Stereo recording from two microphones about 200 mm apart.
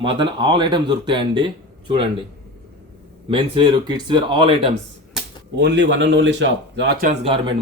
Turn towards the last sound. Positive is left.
turn(degrees=-30)  # may be behind; listen again after turning